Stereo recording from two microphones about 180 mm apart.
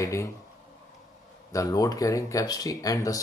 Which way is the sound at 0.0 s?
15° left (ahead or behind).